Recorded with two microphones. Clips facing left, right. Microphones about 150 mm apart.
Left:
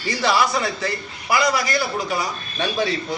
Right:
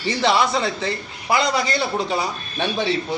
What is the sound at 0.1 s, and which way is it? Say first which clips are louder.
A man's voice: right 1 dB; 25° right (ahead or behind).